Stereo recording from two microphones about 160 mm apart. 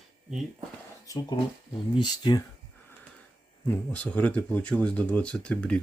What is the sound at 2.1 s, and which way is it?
Speech, 25° left (ahead or behind).